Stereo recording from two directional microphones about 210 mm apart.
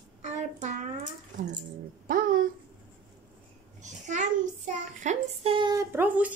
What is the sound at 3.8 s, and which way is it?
A child's voice, 35° right (ahead or behind).